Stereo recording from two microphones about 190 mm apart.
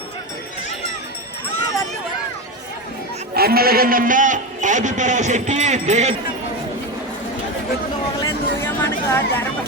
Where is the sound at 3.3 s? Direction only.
55° right (ahead or behind); by 6.1 s 35° right (ahead or behind).